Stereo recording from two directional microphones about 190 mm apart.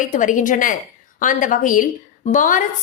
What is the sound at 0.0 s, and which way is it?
A woman's voice, 45° left (ahead or behind).